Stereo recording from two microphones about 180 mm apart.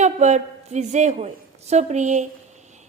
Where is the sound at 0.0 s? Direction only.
40° right (ahead or behind).